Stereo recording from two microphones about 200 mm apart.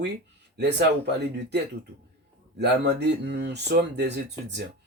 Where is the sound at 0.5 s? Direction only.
60° right (ahead or behind).